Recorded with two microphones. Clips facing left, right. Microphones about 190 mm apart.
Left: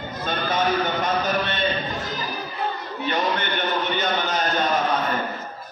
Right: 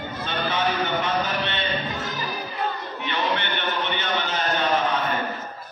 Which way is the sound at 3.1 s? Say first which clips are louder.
Left 2 dB; 40° left (ahead or behind).